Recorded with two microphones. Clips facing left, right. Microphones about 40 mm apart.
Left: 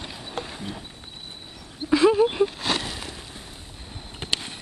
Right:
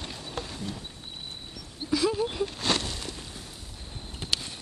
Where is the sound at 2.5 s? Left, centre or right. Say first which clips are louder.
Left 2 dB; centre.